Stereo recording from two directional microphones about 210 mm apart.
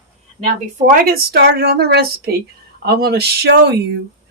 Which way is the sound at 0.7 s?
40° right (ahead or behind).